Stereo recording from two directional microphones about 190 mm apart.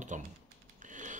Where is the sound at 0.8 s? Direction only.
40° right (ahead or behind).